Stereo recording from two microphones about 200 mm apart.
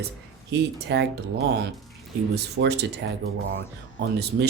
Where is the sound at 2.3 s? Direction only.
55° right (ahead or behind).